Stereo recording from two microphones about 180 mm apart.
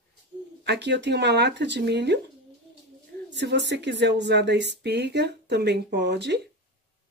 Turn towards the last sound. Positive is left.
turn(degrees=-70)  # may be behind; listen again after turning